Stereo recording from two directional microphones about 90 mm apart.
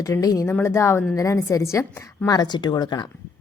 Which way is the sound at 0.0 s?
40° left (ahead or behind).